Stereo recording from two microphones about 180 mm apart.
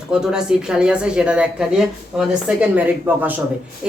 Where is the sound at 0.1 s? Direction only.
5° right (ahead or behind).